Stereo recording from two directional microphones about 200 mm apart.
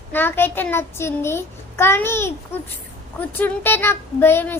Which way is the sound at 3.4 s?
10° left (ahead or behind).